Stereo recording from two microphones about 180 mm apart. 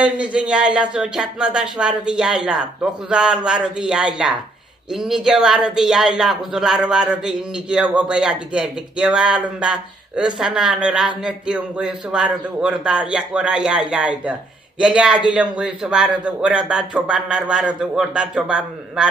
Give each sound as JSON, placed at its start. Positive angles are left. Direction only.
{"t": 0.0, "sound": "speech", "side_deg": -5}